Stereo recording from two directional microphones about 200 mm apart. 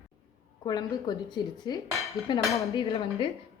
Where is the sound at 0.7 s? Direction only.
20° left (ahead or behind).